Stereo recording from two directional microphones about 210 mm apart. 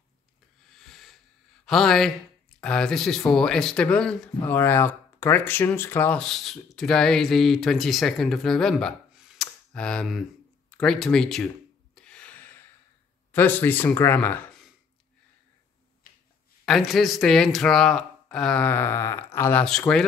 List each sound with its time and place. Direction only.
0.7 s snort: centre (ahead or behind)
1.7 s speech: centre (ahead or behind)
10.7 s a sound: centre (ahead or behind)
13.3 s speech: 10° left (ahead or behind)
16.0 s a sound: 40° left (ahead or behind)
16.6 s speech: centre (ahead or behind)